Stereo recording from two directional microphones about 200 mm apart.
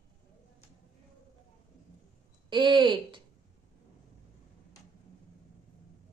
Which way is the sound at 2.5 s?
25° right (ahead or behind).